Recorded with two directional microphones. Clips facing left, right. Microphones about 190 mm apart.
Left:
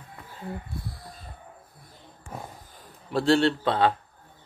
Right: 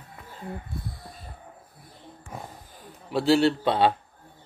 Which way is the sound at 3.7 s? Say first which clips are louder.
Right 1 dB; 20° right (ahead or behind).